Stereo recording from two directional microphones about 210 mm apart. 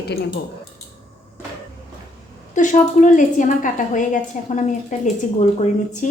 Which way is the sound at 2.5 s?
35° left (ahead or behind).